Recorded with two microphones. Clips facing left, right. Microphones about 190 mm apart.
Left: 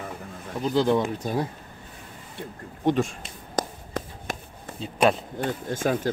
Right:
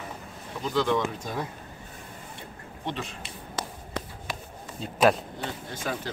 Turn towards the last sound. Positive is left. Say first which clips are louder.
# left 8 dB
turn(degrees=45)  # may be behind; listen again after turning